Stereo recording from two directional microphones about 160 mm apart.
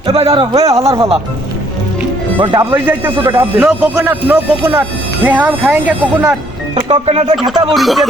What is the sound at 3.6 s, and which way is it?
Speech, centre (ahead or behind).